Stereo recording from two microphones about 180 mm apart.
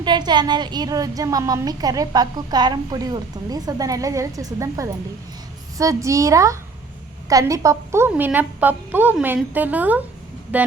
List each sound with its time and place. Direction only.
0.0 s a woman's voice: 25° right (ahead or behind); by 10.7 s 10° right (ahead or behind)